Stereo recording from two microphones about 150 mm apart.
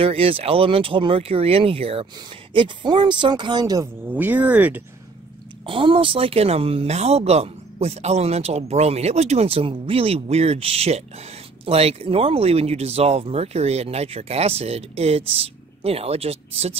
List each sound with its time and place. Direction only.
0.0 s speech: 40° right (ahead or behind); by 3.9 s 25° right (ahead or behind)
4.1 s speech: 10° right (ahead or behind)
5.7 s speech: 35° right (ahead or behind)